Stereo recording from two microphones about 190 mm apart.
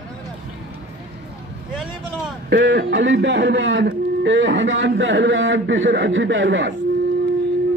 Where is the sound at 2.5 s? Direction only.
80° right.